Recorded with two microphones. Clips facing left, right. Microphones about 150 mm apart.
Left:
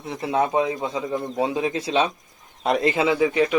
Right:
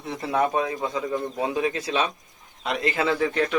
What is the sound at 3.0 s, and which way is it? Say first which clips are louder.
Speech: left 4 dB; 15° left (ahead or behind).